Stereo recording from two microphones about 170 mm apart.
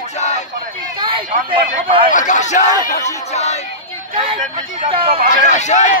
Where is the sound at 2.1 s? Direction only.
45° left (ahead or behind).